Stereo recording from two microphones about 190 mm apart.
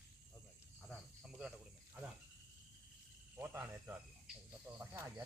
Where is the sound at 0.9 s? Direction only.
Centre (ahead or behind).